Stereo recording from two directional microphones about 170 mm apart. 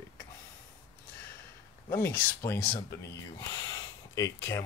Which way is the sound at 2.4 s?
15° left (ahead or behind).